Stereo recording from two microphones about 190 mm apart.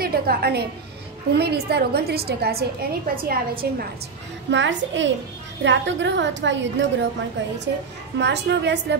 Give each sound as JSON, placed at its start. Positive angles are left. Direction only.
{"t": 0.0, "sound": "a woman's voice", "side_deg": -55}
{"t": 4.5, "sound": "a woman's voice", "side_deg": -75}